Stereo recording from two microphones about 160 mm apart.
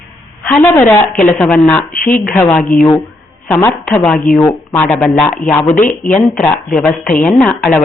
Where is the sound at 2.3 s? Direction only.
15° left (ahead or behind).